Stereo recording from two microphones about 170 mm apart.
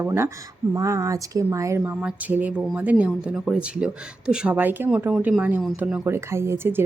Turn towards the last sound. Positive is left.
turn(degrees=-15)  # may be behind; listen again after turning